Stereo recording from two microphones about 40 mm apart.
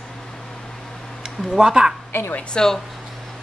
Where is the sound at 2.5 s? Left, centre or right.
Centre.